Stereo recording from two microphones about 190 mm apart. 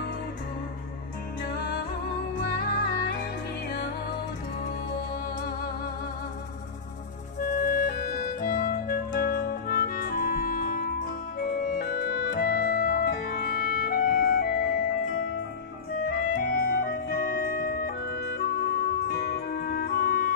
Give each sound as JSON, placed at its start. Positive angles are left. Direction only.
{"t": 2.3, "sound": "music", "side_deg": 55}
{"t": 7.3, "sound": "music", "side_deg": 40}
{"t": 11.3, "sound": "organ", "side_deg": 45}
{"t": 13.8, "sound": "music", "side_deg": 50}